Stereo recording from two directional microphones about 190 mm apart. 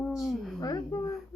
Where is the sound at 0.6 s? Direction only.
20° left (ahead or behind).